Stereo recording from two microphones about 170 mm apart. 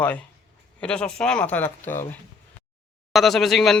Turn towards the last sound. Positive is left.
turn(degrees=0)  # may be behind; listen again after turning